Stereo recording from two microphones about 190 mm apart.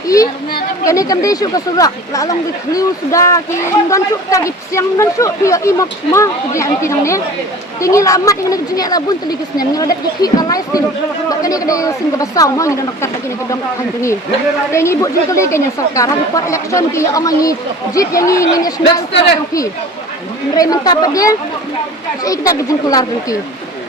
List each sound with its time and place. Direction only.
0.9 s speech: 15° left (ahead or behind)
14.7 s speech: 15° left (ahead or behind)
20.6 s speech: 20° left (ahead or behind)